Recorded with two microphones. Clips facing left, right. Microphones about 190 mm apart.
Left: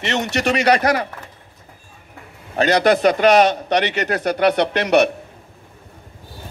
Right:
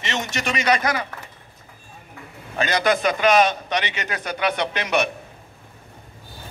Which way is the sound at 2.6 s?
65° left (ahead or behind).